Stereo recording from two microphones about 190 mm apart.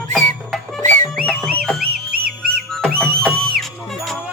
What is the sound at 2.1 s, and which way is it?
Whistle, 50° right (ahead or behind).